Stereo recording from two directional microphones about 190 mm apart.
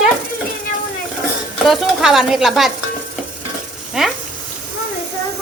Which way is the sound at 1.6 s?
Centre (ahead or behind).